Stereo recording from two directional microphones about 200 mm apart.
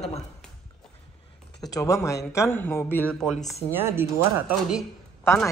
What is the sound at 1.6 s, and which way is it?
A man's voice, 15° left (ahead or behind).